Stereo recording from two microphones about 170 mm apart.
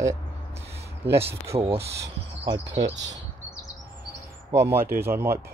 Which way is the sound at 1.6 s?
35° right (ahead or behind).